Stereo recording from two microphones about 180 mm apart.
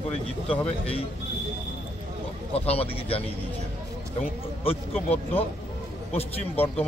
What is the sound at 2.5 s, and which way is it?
Speech, 35° left (ahead or behind).